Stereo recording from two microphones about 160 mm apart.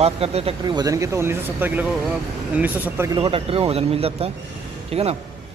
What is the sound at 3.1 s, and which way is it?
A man's voice, 35° right (ahead or behind).